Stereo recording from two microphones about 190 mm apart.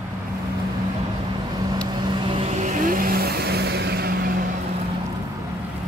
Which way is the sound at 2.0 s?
25° right (ahead or behind).